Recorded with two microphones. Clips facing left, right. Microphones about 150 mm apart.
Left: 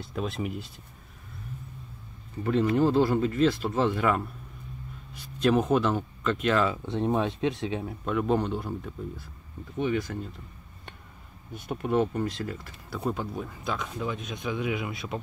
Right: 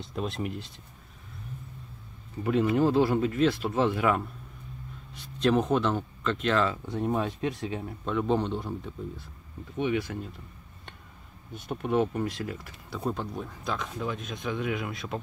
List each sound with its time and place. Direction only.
0.0 s speech: centre (ahead or behind)
2.4 s speech: 5° right (ahead or behind)
6.9 s speech: 25° left (ahead or behind)
8.0 s speech: 5° left (ahead or behind)
11.5 s speech: centre (ahead or behind)